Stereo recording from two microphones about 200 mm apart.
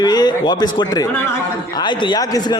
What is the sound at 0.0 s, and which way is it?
A man's voice, 20° left (ahead or behind).